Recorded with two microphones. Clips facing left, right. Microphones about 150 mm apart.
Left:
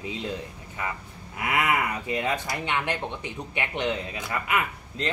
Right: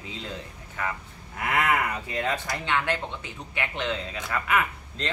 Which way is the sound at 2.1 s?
15° left (ahead or behind).